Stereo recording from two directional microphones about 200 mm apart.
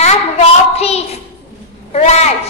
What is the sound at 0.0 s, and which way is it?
Child singing, 30° left (ahead or behind).